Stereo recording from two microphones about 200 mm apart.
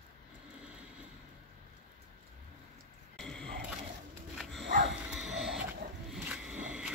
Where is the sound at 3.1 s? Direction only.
5° left (ahead or behind).